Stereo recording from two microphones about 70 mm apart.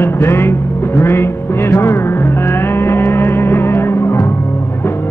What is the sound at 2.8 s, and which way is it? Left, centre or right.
Music, left.